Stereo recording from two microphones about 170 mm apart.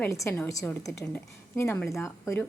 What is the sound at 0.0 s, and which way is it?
A woman's voice, 15° left (ahead or behind).